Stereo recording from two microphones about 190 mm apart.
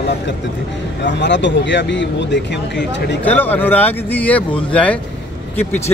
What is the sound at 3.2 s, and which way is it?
Speech, 10° left (ahead or behind).